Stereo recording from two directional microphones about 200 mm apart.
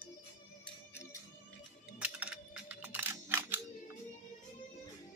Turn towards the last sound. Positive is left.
turn(degrees=-10)  # may be behind; listen again after turning